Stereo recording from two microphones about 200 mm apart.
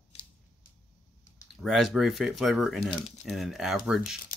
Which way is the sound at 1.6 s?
Centre (ahead or behind).